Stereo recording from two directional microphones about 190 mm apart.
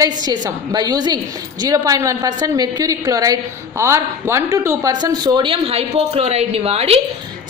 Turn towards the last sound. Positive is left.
turn(degrees=-30)  # may be behind; listen again after turning